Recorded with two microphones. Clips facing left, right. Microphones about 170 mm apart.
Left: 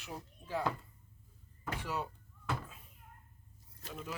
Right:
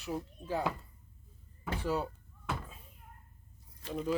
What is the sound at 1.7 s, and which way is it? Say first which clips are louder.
Speech: right 5 dB; 30° right (ahead or behind).